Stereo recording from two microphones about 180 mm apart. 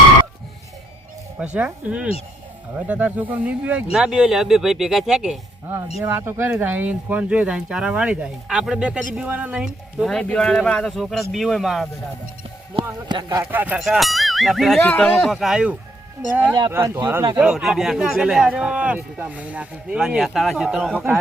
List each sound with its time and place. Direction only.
1.5 s speech: 5° right (ahead or behind)
12.7 s speech: 25° right (ahead or behind)
13.4 s speech: 10° right (ahead or behind)
16.7 s speech: 15° right (ahead or behind)